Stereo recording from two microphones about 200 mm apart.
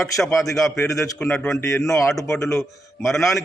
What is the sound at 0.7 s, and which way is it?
A man's voice, 15° left (ahead or behind).